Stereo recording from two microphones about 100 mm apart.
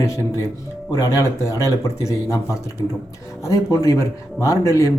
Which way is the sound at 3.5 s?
35° left (ahead or behind).